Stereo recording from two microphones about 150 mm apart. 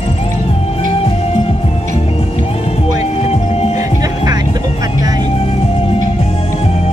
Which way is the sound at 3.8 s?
25° right (ahead or behind).